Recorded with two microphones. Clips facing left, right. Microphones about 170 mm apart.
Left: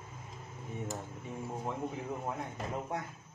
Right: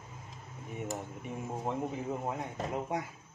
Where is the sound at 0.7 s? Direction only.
20° right (ahead or behind).